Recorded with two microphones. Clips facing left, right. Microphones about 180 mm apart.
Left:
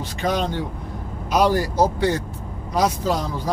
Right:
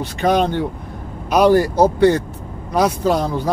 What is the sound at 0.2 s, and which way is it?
Speech, 60° right (ahead or behind).